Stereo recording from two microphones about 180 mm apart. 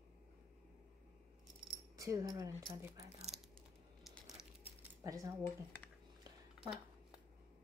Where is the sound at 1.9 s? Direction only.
20° right (ahead or behind).